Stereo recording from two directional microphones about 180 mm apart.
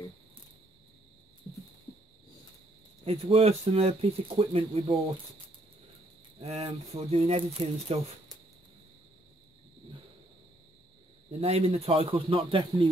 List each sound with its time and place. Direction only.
3.1 s speech: 35° right (ahead or behind)
6.4 s speech: 35° right (ahead or behind)
11.4 s speech: 35° right (ahead or behind)